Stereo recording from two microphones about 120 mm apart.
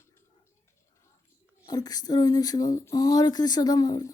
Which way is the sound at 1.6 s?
35° left (ahead or behind).